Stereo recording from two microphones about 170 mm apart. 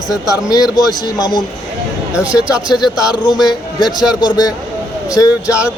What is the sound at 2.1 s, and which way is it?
Speech, 5° right (ahead or behind).